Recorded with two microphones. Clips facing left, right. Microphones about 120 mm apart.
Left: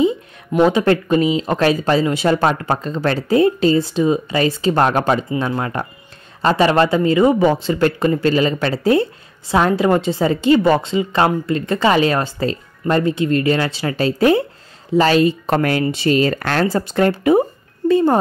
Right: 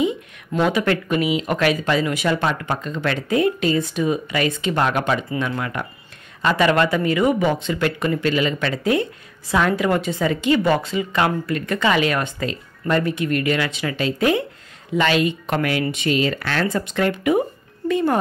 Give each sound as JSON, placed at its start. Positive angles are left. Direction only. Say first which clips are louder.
{"t": 0.5, "sound": "speech", "louder": "left 5 dB", "side_deg": 25}